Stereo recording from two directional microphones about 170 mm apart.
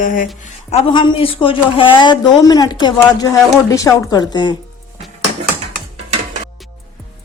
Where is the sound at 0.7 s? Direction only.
30° left (ahead or behind).